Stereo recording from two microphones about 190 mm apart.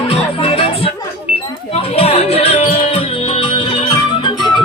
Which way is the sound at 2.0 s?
30° left (ahead or behind).